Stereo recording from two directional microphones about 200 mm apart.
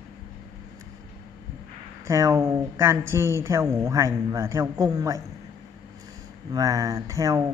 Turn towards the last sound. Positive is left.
turn(degrees=-15)  # may be behind; listen again after turning